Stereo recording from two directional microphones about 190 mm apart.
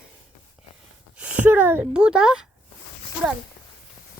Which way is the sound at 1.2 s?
5° right (ahead or behind).